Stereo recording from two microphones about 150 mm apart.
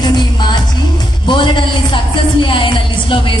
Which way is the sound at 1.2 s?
35° left (ahead or behind).